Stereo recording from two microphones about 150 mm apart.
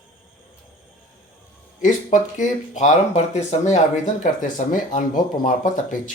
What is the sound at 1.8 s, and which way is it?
Speech, 55° left (ahead or behind).